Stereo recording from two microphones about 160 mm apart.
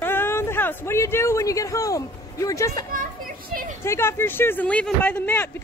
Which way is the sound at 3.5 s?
60° right (ahead or behind).